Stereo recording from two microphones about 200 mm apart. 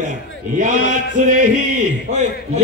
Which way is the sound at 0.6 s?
40° right (ahead or behind).